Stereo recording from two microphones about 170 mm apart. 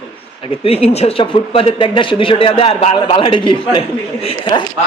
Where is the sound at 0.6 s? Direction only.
35° left (ahead or behind).